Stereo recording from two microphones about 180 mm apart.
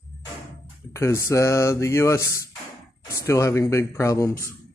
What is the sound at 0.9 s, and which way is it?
Speech, 15° left (ahead or behind).